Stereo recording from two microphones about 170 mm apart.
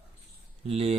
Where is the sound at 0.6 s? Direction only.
35° right (ahead or behind).